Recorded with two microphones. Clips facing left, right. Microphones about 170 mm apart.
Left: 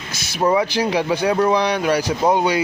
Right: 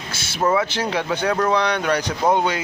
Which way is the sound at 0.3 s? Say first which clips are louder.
Left 2 dB; 15° left (ahead or behind).